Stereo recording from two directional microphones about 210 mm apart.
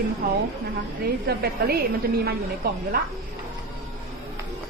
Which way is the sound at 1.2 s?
50° right (ahead or behind).